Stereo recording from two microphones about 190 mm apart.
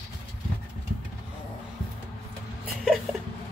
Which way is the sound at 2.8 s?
Centre (ahead or behind).